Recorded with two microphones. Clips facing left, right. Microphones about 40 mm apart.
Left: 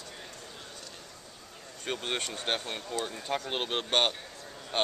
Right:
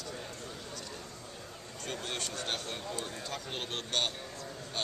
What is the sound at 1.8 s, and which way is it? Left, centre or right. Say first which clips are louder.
Speech: left 5 dB; left.